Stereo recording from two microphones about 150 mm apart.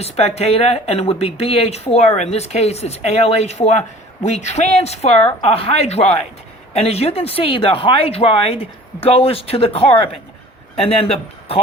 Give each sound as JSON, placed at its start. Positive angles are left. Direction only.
{"t": 0.0, "sound": "speech", "side_deg": 45}